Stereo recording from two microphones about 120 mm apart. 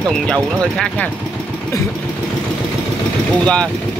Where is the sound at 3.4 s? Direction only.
10° left (ahead or behind).